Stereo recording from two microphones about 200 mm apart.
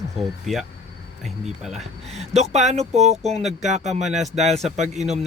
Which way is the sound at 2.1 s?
35° right (ahead or behind).